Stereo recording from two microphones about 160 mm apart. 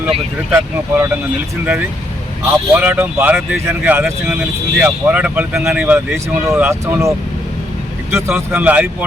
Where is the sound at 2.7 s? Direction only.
10° right (ahead or behind).